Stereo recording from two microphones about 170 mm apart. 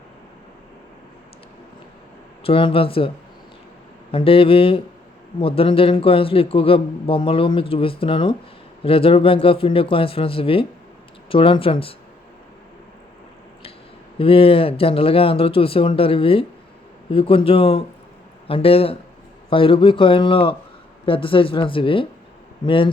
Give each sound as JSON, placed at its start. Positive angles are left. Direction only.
{"t": 2.4, "sound": "a man's voice", "side_deg": 30}
{"t": 4.1, "sound": "a man's voice", "side_deg": 35}
{"t": 14.2, "sound": "a man's voice", "side_deg": 35}